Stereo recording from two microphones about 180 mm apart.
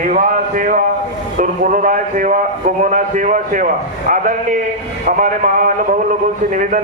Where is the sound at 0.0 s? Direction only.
50° right (ahead or behind).